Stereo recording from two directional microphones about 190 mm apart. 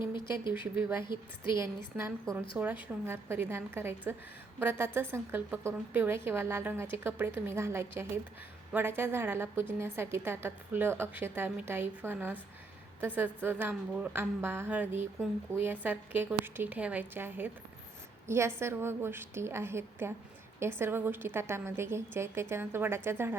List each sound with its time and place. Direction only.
0.6 s a woman's voice: 10° right (ahead or behind)
1.0 s a woman's voice: 25° left (ahead or behind)
1.5 s a woman's voice: 15° right (ahead or behind)